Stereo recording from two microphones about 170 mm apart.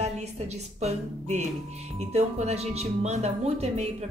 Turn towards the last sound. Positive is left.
turn(degrees=-40)  # may be behind; listen again after turning